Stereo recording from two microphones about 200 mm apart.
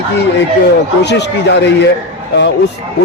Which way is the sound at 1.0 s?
60° left (ahead or behind).